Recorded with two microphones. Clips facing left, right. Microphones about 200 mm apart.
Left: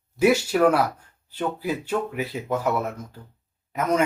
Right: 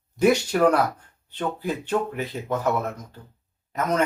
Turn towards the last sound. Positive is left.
turn(degrees=10)  # may be behind; listen again after turning